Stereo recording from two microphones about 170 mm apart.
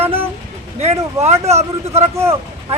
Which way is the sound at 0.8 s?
40° right (ahead or behind).